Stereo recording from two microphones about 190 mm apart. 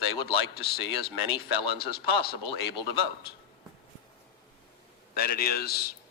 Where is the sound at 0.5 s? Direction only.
55° left (ahead or behind).